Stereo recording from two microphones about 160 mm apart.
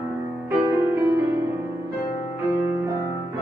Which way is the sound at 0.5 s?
15° right (ahead or behind).